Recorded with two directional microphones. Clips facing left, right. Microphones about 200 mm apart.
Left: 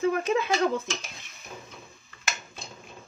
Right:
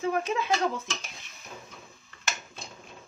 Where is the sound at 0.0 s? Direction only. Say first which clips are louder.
Left 4 dB; 50° left (ahead or behind).